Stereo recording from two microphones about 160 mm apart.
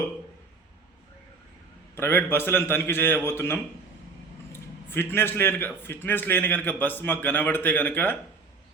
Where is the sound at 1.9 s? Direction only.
15° left (ahead or behind).